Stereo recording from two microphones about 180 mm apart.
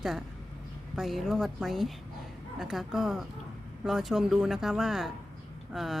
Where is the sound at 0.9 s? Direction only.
Centre (ahead or behind).